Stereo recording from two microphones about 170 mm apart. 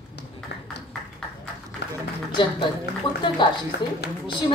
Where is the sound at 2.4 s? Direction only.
25° left (ahead or behind).